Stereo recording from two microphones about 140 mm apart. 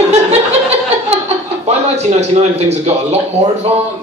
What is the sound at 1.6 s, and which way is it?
A man's voice, 50° right (ahead or behind).